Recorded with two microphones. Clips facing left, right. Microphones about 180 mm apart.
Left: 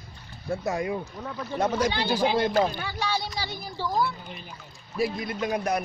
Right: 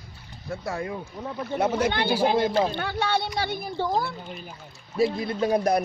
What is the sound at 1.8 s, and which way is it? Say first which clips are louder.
Speech: right 1 dB; 55° right (ahead or behind).